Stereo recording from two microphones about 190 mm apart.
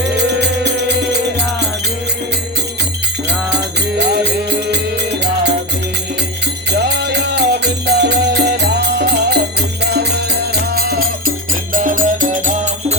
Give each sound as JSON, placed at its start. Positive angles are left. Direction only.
{"t": 0.2, "sound": "music", "side_deg": -65}
{"t": 3.2, "sound": "music", "side_deg": -60}
{"t": 6.7, "sound": "music", "side_deg": -60}
{"t": 11.7, "sound": "music", "side_deg": -45}